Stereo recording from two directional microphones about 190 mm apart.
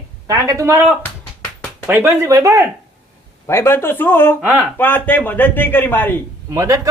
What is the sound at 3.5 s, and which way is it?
Speech, 15° left (ahead or behind).